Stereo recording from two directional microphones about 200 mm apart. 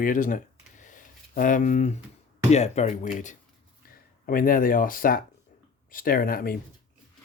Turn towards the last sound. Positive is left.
turn(degrees=45)  # may be behind; listen again after turning